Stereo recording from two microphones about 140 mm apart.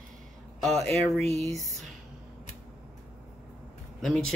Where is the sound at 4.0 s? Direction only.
5° left (ahead or behind).